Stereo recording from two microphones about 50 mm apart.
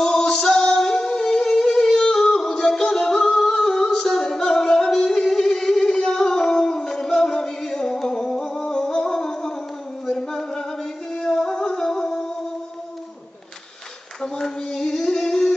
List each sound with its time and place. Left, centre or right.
0.0 s music: centre
14.2 s singing: centre